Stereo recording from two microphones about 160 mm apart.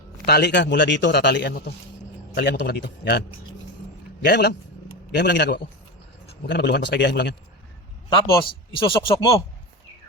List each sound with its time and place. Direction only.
0.3 s a man's voice: 85° left
8.1 s speech: 35° left (ahead or behind)